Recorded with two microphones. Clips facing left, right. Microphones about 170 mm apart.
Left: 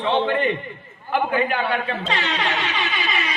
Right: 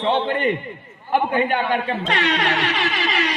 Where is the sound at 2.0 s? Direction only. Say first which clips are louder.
Right 3 dB; 70° right (ahead or behind).